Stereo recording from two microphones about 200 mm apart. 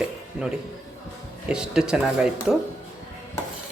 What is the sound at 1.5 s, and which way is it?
Speech, 5° right (ahead or behind).